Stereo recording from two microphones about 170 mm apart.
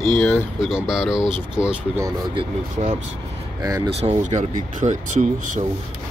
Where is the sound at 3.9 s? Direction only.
40° right (ahead or behind).